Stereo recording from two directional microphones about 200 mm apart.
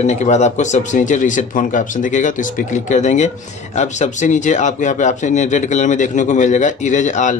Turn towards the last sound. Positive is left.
turn(degrees=35)  # may be behind; listen again after turning